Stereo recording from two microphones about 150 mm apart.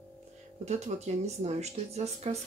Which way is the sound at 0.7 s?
45° right (ahead or behind).